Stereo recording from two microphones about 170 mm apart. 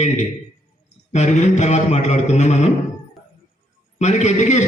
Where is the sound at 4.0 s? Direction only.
45° left (ahead or behind).